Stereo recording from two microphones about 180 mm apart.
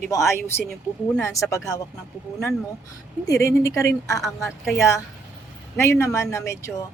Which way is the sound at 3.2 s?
15° left (ahead or behind).